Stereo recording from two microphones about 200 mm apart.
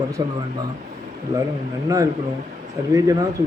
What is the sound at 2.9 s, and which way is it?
Speech, 15° right (ahead or behind).